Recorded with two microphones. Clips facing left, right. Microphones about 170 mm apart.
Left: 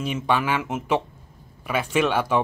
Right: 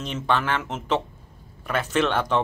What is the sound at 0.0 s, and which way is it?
Speech, 10° left (ahead or behind).